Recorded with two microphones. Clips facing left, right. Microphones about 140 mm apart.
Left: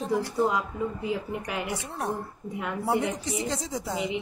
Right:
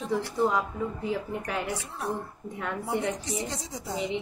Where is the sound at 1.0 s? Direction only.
5° left (ahead or behind).